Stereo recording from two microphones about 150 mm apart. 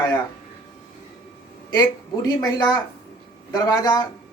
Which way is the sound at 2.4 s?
30° left (ahead or behind).